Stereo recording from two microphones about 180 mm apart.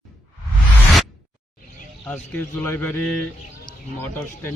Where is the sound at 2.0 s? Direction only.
10° left (ahead or behind).